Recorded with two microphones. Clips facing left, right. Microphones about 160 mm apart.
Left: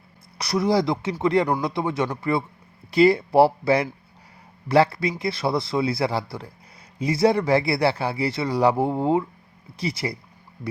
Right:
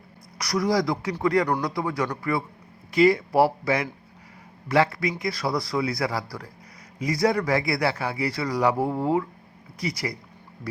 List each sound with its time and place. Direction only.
0.3 s speech: 25° left (ahead or behind)